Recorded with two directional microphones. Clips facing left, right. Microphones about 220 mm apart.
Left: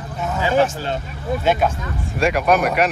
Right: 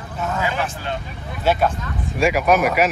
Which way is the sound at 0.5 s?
40° left (ahead or behind).